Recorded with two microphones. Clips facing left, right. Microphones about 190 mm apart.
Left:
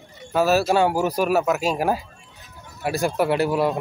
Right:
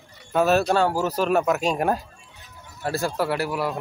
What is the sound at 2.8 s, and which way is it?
A man's voice, 15° left (ahead or behind).